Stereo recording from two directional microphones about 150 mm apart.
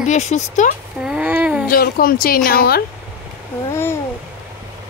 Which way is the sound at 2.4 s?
85° left.